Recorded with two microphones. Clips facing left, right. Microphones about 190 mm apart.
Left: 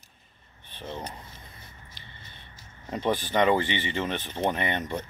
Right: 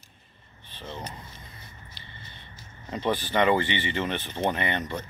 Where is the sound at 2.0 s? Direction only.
45° left (ahead or behind).